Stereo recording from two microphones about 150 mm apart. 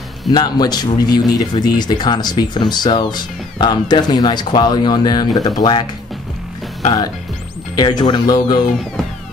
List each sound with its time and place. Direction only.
0.3 s speech: 30° left (ahead or behind)
7.7 s speech: 30° left (ahead or behind)